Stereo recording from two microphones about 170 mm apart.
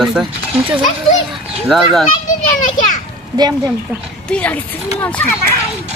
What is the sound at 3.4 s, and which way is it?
Speech, 25° right (ahead or behind).